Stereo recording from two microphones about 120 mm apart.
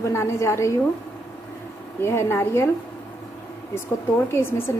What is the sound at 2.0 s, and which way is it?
Speech, 20° left (ahead or behind).